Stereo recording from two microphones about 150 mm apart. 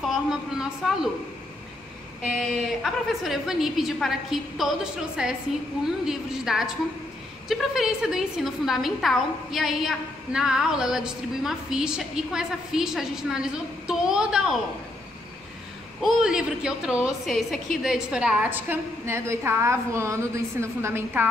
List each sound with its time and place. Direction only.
0.0 s a woman's voice: centre (ahead or behind)
2.8 s a woman's voice: centre (ahead or behind)
16.0 s a woman's voice: 5° right (ahead or behind)